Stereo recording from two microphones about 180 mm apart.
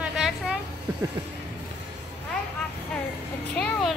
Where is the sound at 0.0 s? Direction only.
5° right (ahead or behind).